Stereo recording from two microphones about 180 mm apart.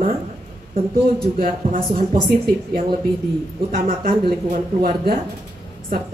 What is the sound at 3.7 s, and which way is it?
Speech, 50° right (ahead or behind).